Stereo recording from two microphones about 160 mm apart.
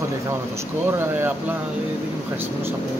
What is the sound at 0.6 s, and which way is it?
Speech, 15° right (ahead or behind).